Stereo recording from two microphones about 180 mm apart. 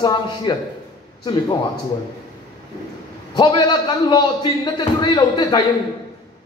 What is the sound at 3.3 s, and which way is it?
A man's voice, 25° left (ahead or behind).